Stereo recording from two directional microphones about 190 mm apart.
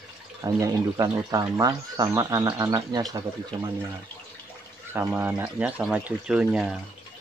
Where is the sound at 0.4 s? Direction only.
15° right (ahead or behind).